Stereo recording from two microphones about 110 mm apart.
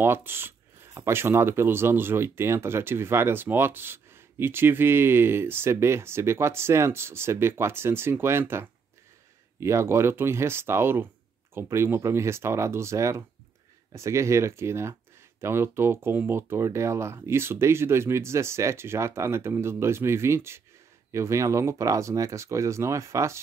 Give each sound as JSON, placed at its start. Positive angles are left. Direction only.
{"t": 0.0, "sound": "speech", "side_deg": -20}